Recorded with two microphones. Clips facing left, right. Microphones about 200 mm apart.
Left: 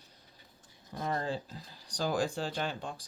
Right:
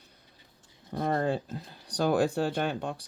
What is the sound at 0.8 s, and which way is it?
Speech, 60° right (ahead or behind).